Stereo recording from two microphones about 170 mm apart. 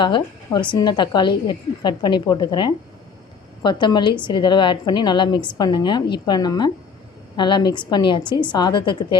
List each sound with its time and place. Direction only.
0.0 s a woman's voice: 25° left (ahead or behind)